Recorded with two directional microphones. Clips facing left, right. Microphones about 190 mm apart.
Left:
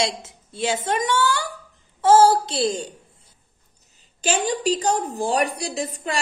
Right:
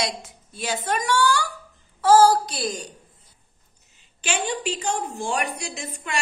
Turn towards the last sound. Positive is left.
turn(degrees=35)  # may be behind; listen again after turning